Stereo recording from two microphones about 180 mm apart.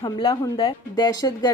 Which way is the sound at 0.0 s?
25° left (ahead or behind).